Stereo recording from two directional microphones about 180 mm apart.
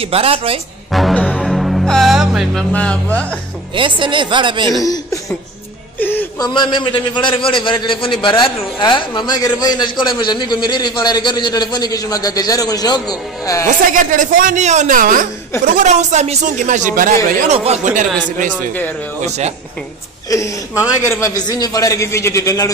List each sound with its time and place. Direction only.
0.0 s speech: 30° right (ahead or behind)
0.9 s music: 5° left (ahead or behind)
2.7 s a man's voice: 5° left (ahead or behind)
3.7 s a woman's voice: 25° right (ahead or behind)
4.8 s speech: 20° left (ahead or behind)
5.9 s whimper: 10° left (ahead or behind)
6.4 s a man's voice: 25° left (ahead or behind)
13.7 s a man's voice: 45° right (ahead or behind)
15.9 s a man's voice: 40° right (ahead or behind)
20.2 s a man's voice: 20° left (ahead or behind)